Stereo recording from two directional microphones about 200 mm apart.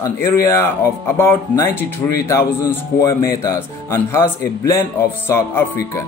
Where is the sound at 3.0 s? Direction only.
15° left (ahead or behind).